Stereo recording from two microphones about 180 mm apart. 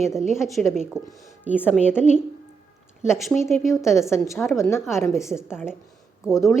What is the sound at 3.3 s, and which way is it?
Speech, 10° left (ahead or behind).